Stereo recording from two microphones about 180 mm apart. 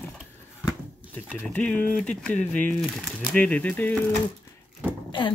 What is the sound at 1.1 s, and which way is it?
Speech, 5° left (ahead or behind).